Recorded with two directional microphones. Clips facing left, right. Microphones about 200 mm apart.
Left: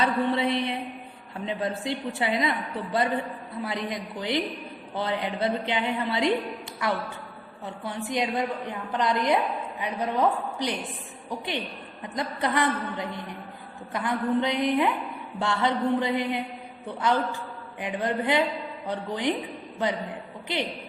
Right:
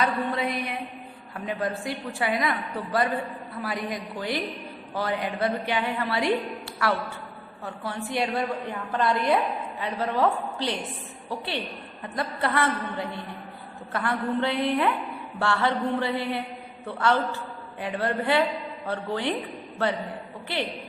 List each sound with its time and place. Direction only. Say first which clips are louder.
0.0 s a sound: left 2 dB; 25° left (ahead or behind)
1.5 s a woman's voice: even; 25° left (ahead or behind)
20.5 s a woman's voice: even; 20° left (ahead or behind)